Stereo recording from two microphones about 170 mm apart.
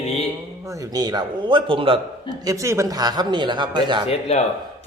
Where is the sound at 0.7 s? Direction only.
20° right (ahead or behind).